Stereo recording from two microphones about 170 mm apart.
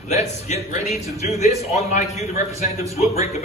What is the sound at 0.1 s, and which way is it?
A man's voice, 40° left (ahead or behind).